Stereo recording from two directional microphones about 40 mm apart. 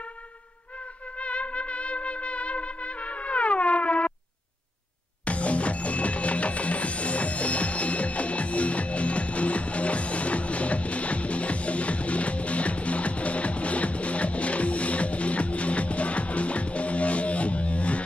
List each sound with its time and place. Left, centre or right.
1.1 s trumpet: left
5.2 s music: left